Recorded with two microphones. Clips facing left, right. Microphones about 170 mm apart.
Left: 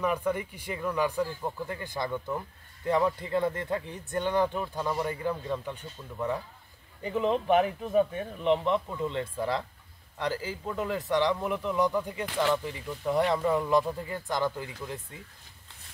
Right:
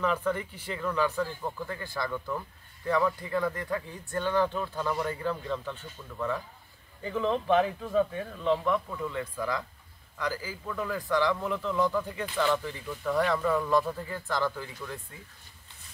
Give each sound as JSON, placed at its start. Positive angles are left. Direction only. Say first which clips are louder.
{"t": 0.0, "sound": "speech", "louder": "even", "side_deg": 10}